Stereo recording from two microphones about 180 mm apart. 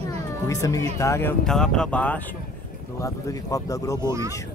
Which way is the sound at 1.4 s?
5° left (ahead or behind).